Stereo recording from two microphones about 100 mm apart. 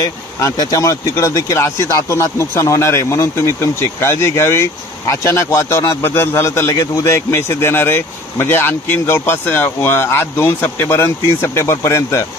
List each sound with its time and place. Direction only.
0.4 s speech: 35° left (ahead or behind)